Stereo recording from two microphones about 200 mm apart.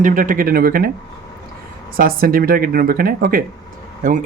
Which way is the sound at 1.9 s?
45° right (ahead or behind).